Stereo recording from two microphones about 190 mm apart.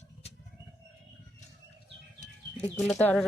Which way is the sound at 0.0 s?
35° left (ahead or behind).